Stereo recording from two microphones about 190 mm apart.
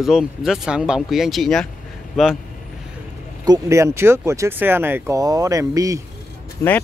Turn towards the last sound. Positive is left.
turn(degrees=15)  # may be behind; listen again after turning